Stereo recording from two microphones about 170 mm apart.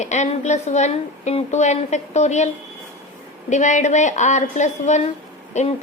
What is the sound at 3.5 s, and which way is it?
A woman's voice, 45° left (ahead or behind).